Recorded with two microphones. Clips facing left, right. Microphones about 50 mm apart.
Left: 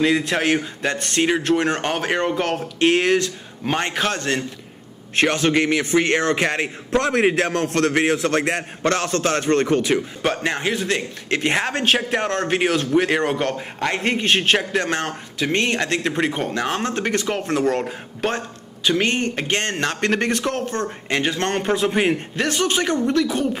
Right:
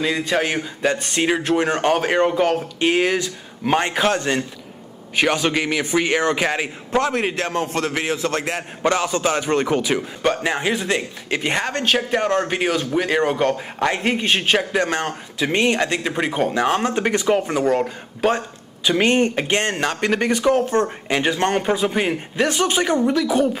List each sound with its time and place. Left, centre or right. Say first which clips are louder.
0.0 s a man's voice: left 2 dB; centre
0.9 s a man's voice: even; centre
5.5 s a man's voice: left 2 dB; centre
8.8 s a man's voice: right 1 dB; centre
10.7 s speech: right 1 dB; centre
11.2 s a man's voice: left 2 dB; centre
19.0 s speech: right 5 dB; right
19.3 s a man's voice: right 2 dB; centre